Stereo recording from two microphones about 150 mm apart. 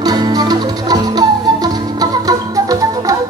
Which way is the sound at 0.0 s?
25° right (ahead or behind).